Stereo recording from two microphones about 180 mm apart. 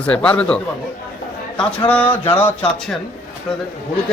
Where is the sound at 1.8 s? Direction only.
10° left (ahead or behind).